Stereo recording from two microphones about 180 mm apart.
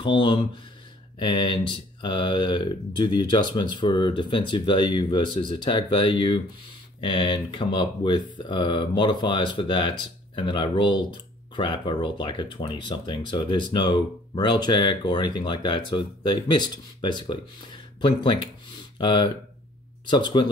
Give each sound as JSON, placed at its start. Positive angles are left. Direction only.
{"t": 0.0, "sound": "speech", "side_deg": 25}